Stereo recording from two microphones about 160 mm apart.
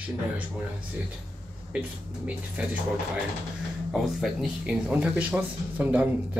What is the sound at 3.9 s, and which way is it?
Speech, centre (ahead or behind).